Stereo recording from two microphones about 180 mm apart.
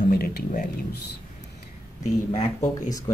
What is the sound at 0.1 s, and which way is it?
Speech, 50° left (ahead or behind).